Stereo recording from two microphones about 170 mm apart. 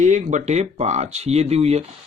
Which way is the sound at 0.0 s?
45° right (ahead or behind).